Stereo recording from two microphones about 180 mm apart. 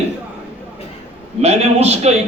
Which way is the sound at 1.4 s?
35° right (ahead or behind).